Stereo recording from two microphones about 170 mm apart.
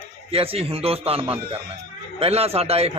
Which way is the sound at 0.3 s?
35° right (ahead or behind).